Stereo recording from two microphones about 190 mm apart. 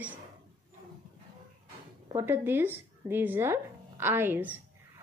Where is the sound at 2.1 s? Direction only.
10° right (ahead or behind).